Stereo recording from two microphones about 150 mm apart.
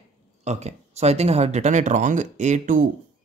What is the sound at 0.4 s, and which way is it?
Speech, 50° right (ahead or behind).